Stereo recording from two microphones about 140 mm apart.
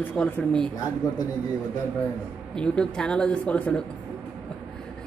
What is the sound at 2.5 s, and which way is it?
A woman's voice, 5° left (ahead or behind).